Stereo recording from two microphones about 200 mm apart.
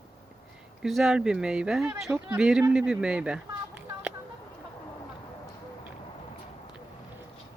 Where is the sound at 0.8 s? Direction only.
Centre (ahead or behind).